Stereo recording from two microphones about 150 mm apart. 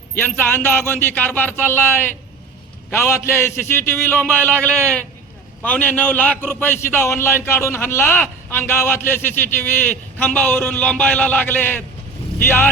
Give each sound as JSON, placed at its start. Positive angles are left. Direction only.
{"t": 0.1, "sound": "a man's voice", "side_deg": 10}